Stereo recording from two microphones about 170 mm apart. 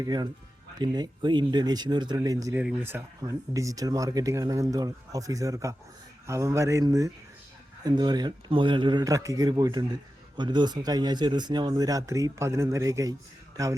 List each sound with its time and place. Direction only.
0.0 s speech: 25° right (ahead or behind)